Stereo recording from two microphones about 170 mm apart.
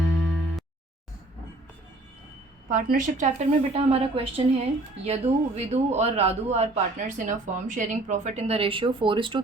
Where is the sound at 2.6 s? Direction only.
50° right (ahead or behind).